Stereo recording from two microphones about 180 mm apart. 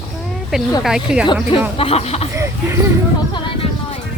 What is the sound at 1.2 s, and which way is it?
Speech, 25° left (ahead or behind).